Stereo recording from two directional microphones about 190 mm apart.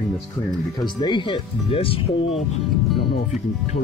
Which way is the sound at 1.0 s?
25° left (ahead or behind).